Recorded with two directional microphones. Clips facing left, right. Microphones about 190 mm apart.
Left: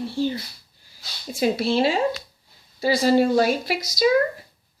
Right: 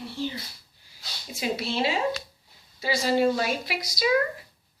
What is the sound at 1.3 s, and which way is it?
Speech, 35° left (ahead or behind).